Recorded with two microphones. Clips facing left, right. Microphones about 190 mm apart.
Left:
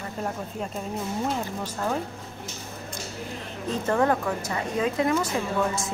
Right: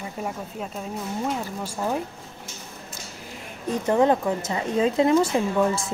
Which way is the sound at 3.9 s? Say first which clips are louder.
Right 4 dB; 20° right (ahead or behind).